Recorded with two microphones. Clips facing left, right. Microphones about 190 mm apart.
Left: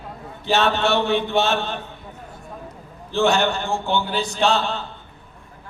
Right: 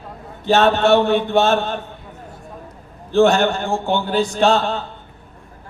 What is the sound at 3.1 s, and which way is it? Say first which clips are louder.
Speech: right 5 dB; 50° right (ahead or behind).